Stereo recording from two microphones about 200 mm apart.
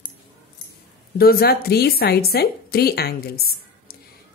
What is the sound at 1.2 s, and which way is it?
A woman's voice, 50° left (ahead or behind).